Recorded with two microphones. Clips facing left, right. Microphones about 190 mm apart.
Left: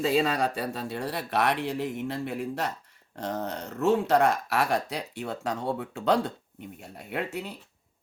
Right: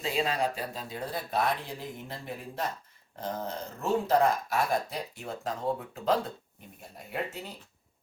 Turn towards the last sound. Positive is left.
turn(degrees=65)  # may be behind; listen again after turning